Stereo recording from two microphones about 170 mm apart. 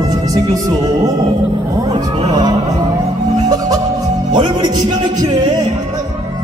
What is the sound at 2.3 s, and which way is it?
Music, 25° right (ahead or behind).